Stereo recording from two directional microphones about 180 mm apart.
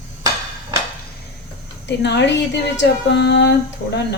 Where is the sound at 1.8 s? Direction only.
70° left (ahead or behind).